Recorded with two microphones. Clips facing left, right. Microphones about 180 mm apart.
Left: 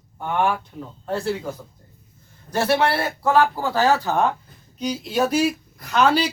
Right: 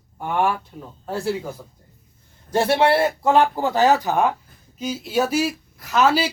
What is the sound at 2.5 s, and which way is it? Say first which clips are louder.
A man's voice: right 3 dB; 25° right (ahead or behind).